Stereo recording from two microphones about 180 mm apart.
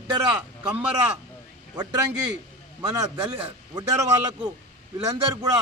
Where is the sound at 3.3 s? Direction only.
30° right (ahead or behind).